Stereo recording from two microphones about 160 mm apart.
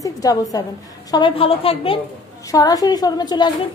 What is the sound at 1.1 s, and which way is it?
Speech, 35° left (ahead or behind).